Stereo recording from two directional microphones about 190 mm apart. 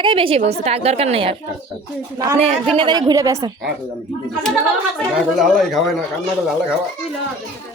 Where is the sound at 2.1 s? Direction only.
20° right (ahead or behind).